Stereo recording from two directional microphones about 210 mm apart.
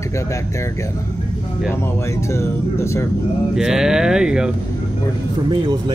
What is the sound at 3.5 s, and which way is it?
Speech, 5° right (ahead or behind).